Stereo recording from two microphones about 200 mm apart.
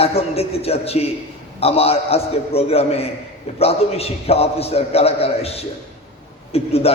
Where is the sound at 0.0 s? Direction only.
30° left (ahead or behind).